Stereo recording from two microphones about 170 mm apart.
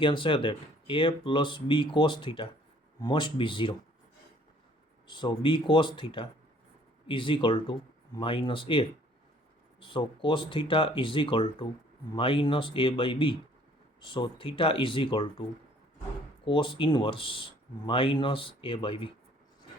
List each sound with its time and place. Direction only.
0.0 s speech: 30° left (ahead or behind)
5.0 s speech: 25° left (ahead or behind)